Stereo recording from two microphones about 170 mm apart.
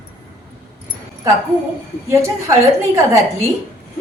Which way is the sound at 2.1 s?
15° right (ahead or behind).